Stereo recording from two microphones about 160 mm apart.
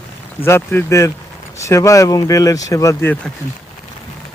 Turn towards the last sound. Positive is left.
turn(degrees=10)  # may be behind; listen again after turning